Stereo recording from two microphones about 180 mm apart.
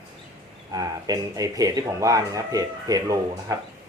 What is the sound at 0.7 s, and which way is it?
Speech, 20° right (ahead or behind).